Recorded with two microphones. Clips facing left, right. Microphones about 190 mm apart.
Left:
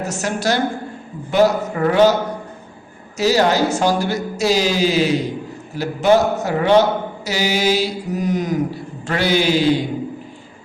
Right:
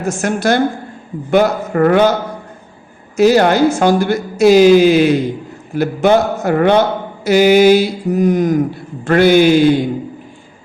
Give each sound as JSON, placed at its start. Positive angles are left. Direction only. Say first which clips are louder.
{"t": 0.0, "sound": "a man's voice", "louder": "right 5 dB", "side_deg": -50}
{"t": 3.2, "sound": "a man's voice", "louder": "right 6 dB", "side_deg": -55}